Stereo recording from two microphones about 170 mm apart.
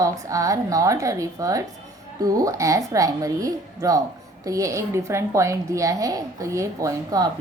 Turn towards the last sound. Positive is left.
turn(degrees=-20)  # may be behind; listen again after turning